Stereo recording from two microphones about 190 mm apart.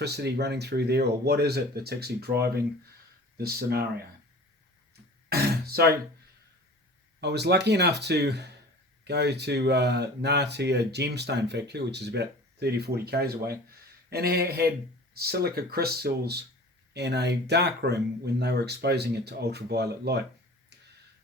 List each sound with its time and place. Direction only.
0.0 s speech: 60° right (ahead or behind)
5.3 s speech: 55° right (ahead or behind)
7.2 s speech: 60° right (ahead or behind)